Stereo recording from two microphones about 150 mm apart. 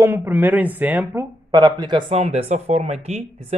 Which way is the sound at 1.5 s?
25° right (ahead or behind).